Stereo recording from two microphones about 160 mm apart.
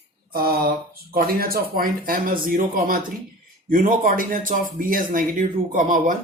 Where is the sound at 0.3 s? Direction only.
70° right (ahead or behind).